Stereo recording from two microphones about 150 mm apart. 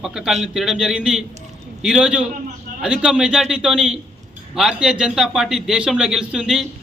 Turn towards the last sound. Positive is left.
turn(degrees=-5)  # may be behind; listen again after turning